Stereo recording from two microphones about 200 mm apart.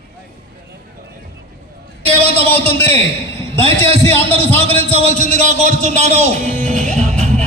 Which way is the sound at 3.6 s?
30° right (ahead or behind).